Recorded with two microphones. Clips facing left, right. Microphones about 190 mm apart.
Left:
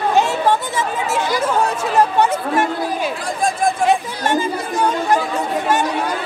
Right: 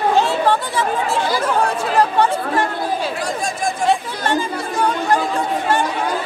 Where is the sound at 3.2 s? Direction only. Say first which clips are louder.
Left 3 dB; 55° left (ahead or behind).